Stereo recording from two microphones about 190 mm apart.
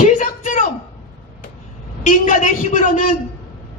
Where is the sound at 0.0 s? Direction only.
40° left (ahead or behind).